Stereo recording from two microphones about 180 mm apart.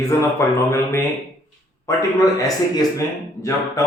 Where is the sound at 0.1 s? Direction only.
15° left (ahead or behind).